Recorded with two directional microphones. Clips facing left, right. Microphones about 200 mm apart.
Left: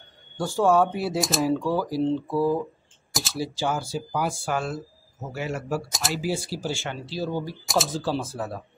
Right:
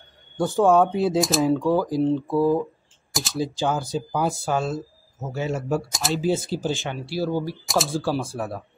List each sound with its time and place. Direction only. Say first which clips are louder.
0.4 s speech: right 3 dB; 20° right (ahead or behind)
0.9 s speech: right 5 dB; 5° left (ahead or behind)
1.6 s speech: right 4 dB; 15° right (ahead or behind)
3.1 s typing: right 2 dB; centre (ahead or behind)
3.3 s speech: right 3 dB; 15° right (ahead or behind)
5.9 s speech: right 3 dB; centre (ahead or behind)
6.1 s speech: right 6 dB; 20° right (ahead or behind); by 7.9 s centre (ahead or behind)
7.9 s speech: right 3 dB; 10° right (ahead or behind)